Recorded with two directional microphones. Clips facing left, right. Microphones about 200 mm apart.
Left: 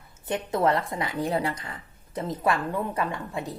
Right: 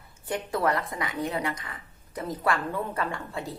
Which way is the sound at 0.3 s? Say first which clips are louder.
Left 3 dB; 20° left (ahead or behind).